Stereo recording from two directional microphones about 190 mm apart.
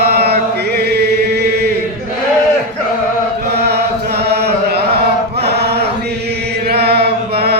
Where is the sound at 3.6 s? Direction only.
60° right (ahead or behind).